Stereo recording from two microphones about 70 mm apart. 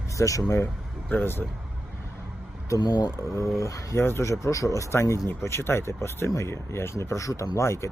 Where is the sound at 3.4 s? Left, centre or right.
Left.